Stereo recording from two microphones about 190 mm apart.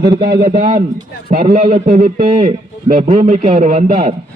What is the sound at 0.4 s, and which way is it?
A man's voice, 45° right (ahead or behind).